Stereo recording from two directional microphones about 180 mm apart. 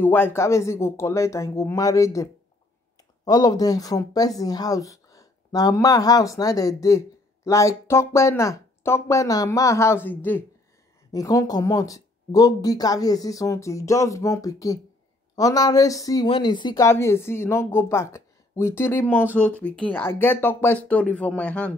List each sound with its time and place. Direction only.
0.0 s a woman's voice: 10° left (ahead or behind)
3.3 s a woman's voice: 20° left (ahead or behind)